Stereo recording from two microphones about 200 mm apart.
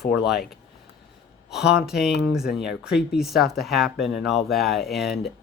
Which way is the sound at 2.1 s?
55° left (ahead or behind).